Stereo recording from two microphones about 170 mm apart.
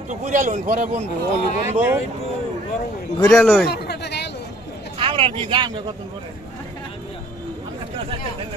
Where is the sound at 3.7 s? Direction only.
75° left (ahead or behind).